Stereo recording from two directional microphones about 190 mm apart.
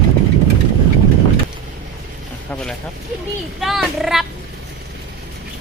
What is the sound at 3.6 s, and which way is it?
Speech, centre (ahead or behind).